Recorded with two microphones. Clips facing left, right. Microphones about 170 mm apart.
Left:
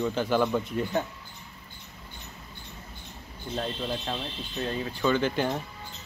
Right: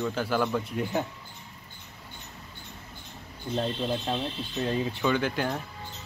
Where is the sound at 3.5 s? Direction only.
25° right (ahead or behind).